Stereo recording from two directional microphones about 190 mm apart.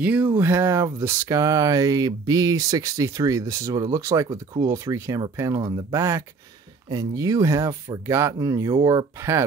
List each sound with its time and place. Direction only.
0.0 s speech: 10° right (ahead or behind)